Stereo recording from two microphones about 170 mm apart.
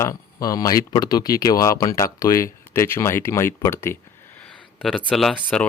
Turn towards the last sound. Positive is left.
turn(degrees=5)  # may be behind; listen again after turning